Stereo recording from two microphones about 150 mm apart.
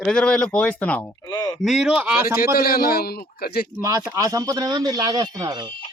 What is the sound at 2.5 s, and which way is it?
A man's voice, 90° left.